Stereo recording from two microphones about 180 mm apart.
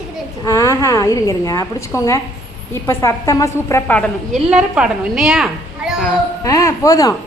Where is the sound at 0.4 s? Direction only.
15° left (ahead or behind); by 6.1 s 5° right (ahead or behind).